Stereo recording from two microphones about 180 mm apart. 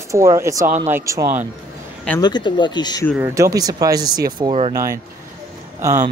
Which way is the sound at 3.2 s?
15° right (ahead or behind).